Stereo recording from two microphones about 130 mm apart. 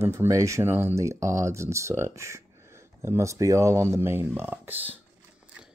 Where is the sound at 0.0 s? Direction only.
20° right (ahead or behind).